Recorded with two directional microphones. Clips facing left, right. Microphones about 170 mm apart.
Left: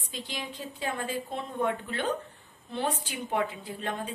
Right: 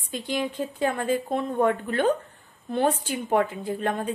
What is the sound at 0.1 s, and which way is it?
A woman's voice, 55° right (ahead or behind).